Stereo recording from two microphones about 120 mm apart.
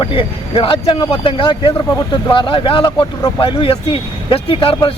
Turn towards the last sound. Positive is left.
turn(degrees=45)  # may be behind; listen again after turning